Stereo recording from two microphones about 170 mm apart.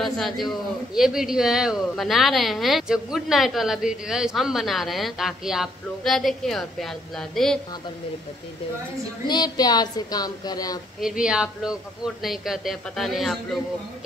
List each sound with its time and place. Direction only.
0.0 s speech: centre (ahead or behind)
9.3 s speech: 25° left (ahead or behind)
11.0 s speech: 5° right (ahead or behind)